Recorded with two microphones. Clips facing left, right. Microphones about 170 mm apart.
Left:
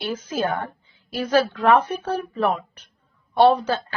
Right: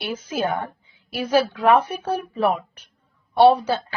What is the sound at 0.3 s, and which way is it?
A woman's voice, 10° right (ahead or behind).